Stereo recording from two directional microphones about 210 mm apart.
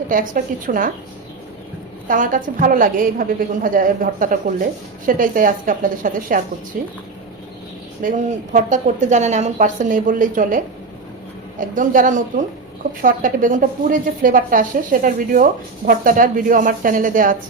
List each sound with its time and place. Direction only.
0.7 s a woman's voice: 40° right (ahead or behind)
2.0 s a woman's voice: 40° right (ahead or behind)
8.0 s a woman's voice: 40° right (ahead or behind)
11.7 s a woman's voice: 40° right (ahead or behind)